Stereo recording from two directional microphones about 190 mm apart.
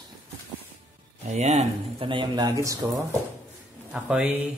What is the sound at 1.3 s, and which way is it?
Speech, 35° right (ahead or behind).